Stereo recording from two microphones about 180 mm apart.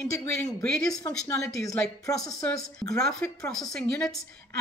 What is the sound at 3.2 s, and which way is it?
Speech, 5° left (ahead or behind).